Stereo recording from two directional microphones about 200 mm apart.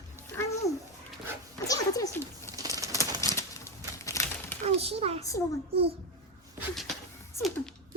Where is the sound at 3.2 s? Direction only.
15° left (ahead or behind).